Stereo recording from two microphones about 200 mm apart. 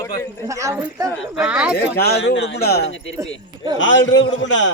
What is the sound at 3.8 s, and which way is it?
Speech, 65° left (ahead or behind).